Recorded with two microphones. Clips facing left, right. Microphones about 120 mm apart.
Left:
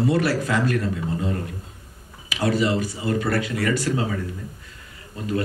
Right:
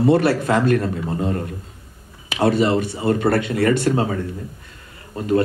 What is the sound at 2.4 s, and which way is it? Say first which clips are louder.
Speech: right 4 dB; 30° right (ahead or behind).